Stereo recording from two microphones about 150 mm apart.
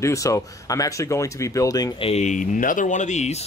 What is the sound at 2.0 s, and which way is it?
Speech, 45° left (ahead or behind).